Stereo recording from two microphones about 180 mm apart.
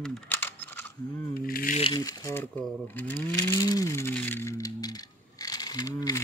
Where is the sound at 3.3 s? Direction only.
20° left (ahead or behind).